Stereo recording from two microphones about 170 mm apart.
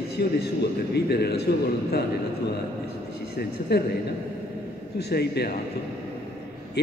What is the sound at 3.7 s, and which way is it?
Speech, 75° left (ahead or behind).